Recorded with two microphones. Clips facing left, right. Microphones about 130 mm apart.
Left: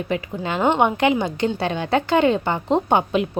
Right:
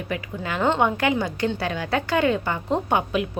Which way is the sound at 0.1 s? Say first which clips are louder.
Left 3 dB; 25° left (ahead or behind).